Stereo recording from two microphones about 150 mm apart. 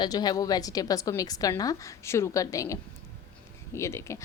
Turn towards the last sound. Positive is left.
turn(degrees=20)  # may be behind; listen again after turning